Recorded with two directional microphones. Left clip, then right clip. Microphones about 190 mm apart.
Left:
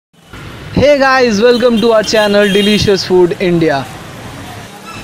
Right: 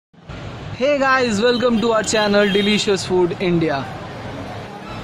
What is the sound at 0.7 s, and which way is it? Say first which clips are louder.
Speech: left 8 dB; 10° left (ahead or behind).